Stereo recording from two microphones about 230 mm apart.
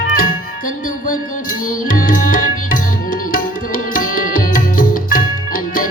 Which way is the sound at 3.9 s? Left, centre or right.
Left.